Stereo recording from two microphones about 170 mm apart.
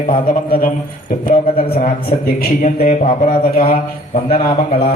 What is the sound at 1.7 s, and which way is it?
A man's voice, 60° left (ahead or behind).